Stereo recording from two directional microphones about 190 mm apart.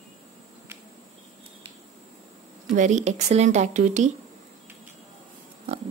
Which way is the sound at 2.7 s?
40° right (ahead or behind).